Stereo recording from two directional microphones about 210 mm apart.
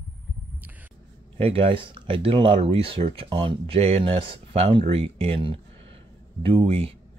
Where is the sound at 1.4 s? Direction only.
25° right (ahead or behind).